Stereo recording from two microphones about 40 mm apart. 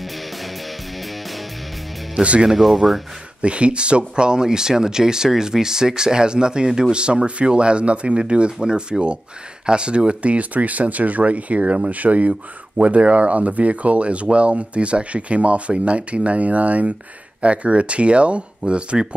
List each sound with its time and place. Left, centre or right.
2.4 s speech: centre
3.4 s speech: right